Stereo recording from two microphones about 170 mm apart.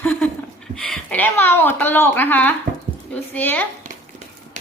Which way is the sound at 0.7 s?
5° left (ahead or behind).